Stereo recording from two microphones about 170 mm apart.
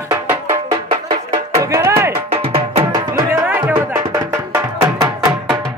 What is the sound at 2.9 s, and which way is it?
Music, 15° right (ahead or behind).